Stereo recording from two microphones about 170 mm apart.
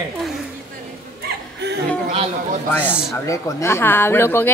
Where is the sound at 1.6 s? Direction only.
80° right.